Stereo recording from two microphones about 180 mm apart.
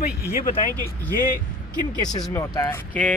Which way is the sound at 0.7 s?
10° left (ahead or behind).